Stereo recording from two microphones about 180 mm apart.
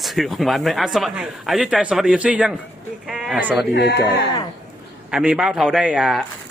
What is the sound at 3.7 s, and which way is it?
Speech, 65° left (ahead or behind).